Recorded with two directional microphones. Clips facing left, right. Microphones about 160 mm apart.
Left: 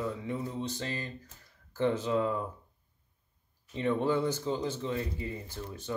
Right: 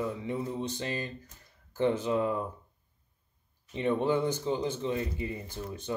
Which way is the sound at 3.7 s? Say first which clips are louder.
Right 1 dB; 15° right (ahead or behind).